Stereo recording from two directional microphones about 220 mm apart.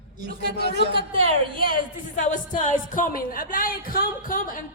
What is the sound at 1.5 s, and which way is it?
A woman's voice, 40° left (ahead or behind).